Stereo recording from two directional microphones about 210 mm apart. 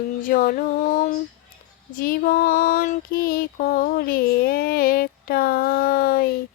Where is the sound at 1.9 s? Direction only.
40° left (ahead or behind).